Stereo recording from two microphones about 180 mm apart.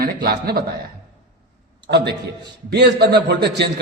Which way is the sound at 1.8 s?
65° right (ahead or behind).